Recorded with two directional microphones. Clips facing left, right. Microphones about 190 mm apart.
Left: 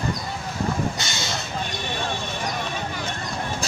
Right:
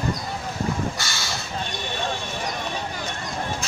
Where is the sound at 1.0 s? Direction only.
20° left (ahead or behind).